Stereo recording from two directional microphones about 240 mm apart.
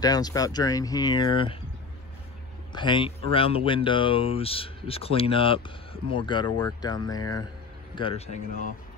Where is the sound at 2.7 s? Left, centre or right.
Centre.